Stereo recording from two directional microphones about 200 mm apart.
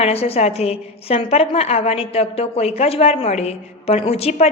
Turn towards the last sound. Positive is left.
turn(degrees=30)  # may be behind; listen again after turning